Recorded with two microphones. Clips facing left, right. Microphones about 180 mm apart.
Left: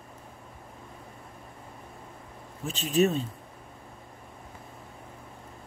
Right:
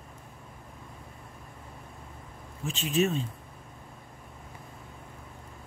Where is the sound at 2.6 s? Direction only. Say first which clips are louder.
Left 3 dB; 40° left (ahead or behind).